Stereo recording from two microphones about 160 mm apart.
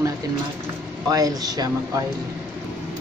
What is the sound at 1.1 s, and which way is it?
Speech, 25° right (ahead or behind).